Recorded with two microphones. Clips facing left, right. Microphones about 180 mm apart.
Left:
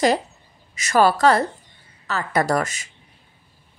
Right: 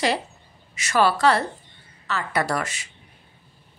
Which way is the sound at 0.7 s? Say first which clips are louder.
Left 3 dB; 40° left (ahead or behind).